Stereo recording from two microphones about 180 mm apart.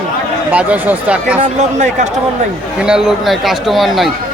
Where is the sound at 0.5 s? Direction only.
10° right (ahead or behind).